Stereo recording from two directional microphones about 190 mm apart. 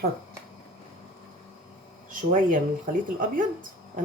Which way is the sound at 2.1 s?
45° right (ahead or behind).